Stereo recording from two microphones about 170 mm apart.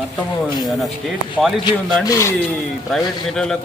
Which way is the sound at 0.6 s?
Centre (ahead or behind).